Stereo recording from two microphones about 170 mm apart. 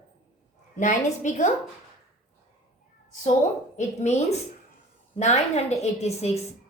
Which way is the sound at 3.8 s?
40° left (ahead or behind).